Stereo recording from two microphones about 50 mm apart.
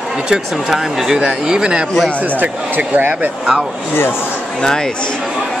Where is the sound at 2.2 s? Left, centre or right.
Right.